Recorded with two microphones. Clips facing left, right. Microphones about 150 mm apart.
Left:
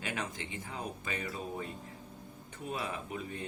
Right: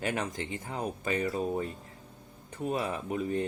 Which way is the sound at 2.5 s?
45° right (ahead or behind).